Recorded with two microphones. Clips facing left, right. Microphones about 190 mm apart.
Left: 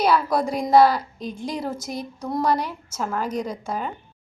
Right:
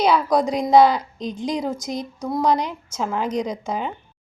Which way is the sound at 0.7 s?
20° right (ahead or behind).